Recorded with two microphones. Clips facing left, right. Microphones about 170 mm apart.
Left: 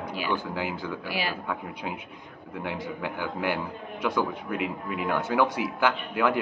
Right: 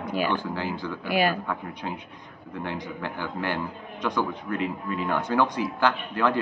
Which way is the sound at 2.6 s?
10° left (ahead or behind).